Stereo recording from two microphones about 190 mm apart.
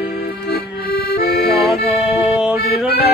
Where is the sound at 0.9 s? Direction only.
55° left (ahead or behind).